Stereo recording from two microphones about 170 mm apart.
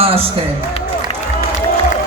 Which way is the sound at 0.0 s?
35° right (ahead or behind).